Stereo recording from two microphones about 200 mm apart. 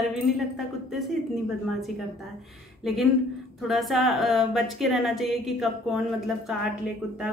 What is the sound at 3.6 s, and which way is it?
A woman's voice, centre (ahead or behind).